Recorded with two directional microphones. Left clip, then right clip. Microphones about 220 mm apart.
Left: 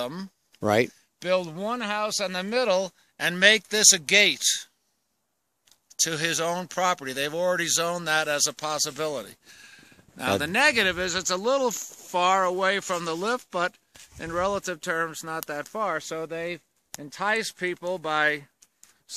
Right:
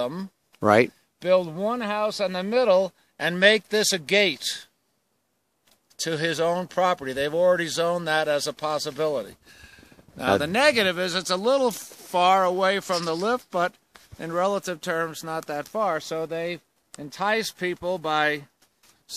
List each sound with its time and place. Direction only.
0.0 s speech: 10° right (ahead or behind)
0.5 s speech: 5° left (ahead or behind)
1.2 s speech: 10° right (ahead or behind)
5.9 s speech: 20° right (ahead or behind); by 18.5 s 55° right (ahead or behind)